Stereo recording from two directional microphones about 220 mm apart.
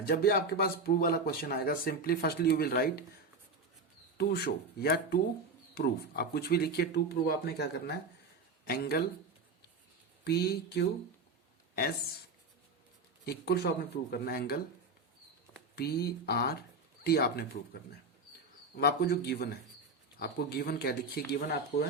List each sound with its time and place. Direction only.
0.1 s speech: 45° left (ahead or behind)
4.2 s speech: 45° left (ahead or behind)
10.2 s speech: 45° left (ahead or behind)
13.2 s speech: 45° left (ahead or behind)
15.7 s speech: 45° left (ahead or behind)
18.8 s speech: 45° left (ahead or behind)